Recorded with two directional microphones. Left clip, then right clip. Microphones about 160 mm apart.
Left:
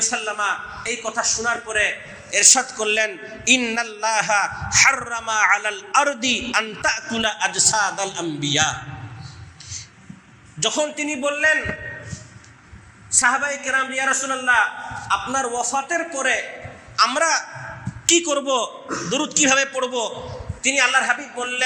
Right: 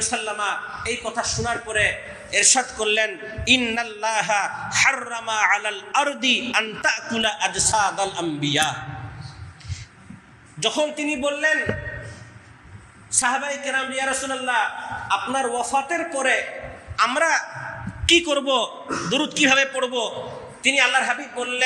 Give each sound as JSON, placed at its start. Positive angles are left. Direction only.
{"t": 0.0, "sound": "a man's voice", "side_deg": 15}
{"t": 10.6, "sound": "a man's voice", "side_deg": 15}
{"t": 13.1, "sound": "a man's voice", "side_deg": 15}
{"t": 17.0, "sound": "a man's voice", "side_deg": 20}
{"t": 18.0, "sound": "a man's voice", "side_deg": 0}
{"t": 19.1, "sound": "a man's voice", "side_deg": 5}